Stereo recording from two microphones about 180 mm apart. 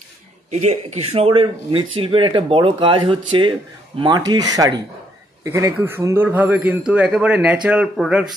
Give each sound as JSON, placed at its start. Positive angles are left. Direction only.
{"t": 0.5, "sound": "a man's voice", "side_deg": -40}